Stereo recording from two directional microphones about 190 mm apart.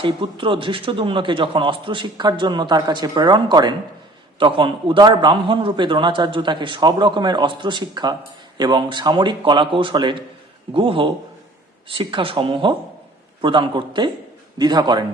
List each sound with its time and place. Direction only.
0.0 s a man's voice: 25° right (ahead or behind)